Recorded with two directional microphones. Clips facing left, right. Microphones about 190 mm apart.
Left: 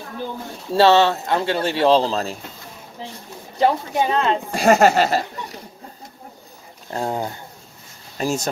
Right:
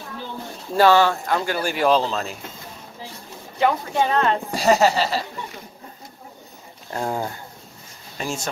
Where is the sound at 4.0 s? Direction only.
25° left (ahead or behind).